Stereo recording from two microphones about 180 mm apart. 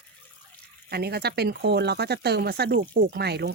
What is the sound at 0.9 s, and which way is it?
Speech, 60° right (ahead or behind).